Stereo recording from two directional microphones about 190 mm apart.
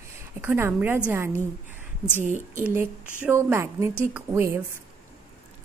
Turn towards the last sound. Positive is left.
turn(degrees=-10)  # may be behind; listen again after turning